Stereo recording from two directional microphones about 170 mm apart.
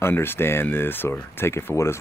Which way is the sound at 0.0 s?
15° left (ahead or behind).